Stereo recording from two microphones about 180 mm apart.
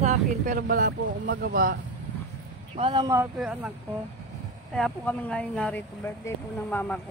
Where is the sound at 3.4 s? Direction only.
5° right (ahead or behind).